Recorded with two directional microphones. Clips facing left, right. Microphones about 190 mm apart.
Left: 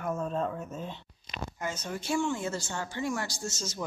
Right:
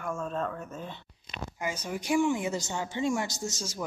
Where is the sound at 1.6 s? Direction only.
10° right (ahead or behind).